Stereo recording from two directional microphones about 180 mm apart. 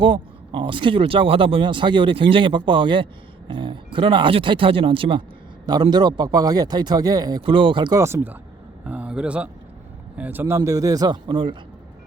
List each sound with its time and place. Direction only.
0.0 s a man's voice: 30° right (ahead or behind)